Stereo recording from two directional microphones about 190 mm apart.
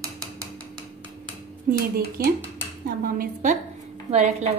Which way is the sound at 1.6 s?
50° right (ahead or behind).